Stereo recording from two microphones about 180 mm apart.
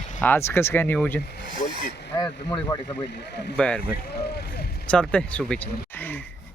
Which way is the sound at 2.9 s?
70° left (ahead or behind).